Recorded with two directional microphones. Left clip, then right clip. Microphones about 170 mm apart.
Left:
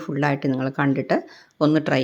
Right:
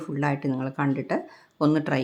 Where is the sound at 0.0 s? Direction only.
15° left (ahead or behind).